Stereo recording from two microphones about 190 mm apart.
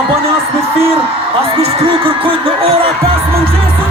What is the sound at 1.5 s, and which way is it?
Speech, 30° right (ahead or behind).